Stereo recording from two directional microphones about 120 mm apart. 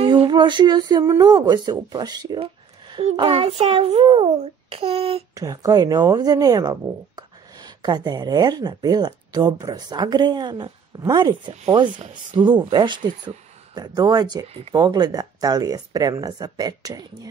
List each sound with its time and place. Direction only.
0.2 s speech: 40° right (ahead or behind)
2.4 s a sound: 50° right (ahead or behind)
3.2 s child singing: 50° right (ahead or behind)
5.3 s speech: 30° right (ahead or behind)